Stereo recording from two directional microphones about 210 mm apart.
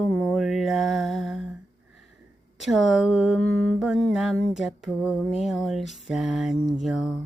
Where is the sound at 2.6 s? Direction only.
Centre (ahead or behind).